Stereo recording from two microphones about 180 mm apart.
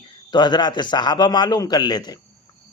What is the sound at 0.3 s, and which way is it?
A man's voice, 25° left (ahead or behind).